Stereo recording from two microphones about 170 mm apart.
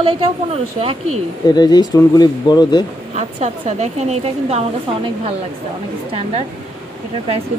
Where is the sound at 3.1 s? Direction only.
40° right (ahead or behind).